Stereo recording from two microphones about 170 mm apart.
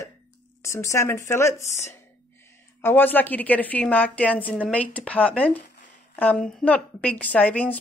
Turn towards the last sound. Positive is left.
turn(degrees=10)  # may be behind; listen again after turning